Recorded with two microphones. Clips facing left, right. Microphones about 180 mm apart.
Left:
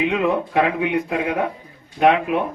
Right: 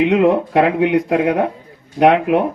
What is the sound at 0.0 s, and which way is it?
A man's voice, 65° right (ahead or behind).